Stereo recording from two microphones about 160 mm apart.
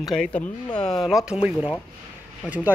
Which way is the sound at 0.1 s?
5° left (ahead or behind).